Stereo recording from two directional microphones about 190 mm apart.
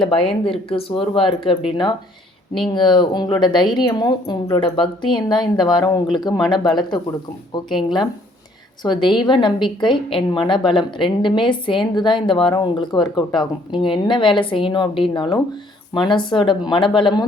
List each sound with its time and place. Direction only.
0.0 s a woman's voice: 30° left (ahead or behind)
7.7 s speech: centre (ahead or behind)
8.8 s a woman's voice: 25° left (ahead or behind)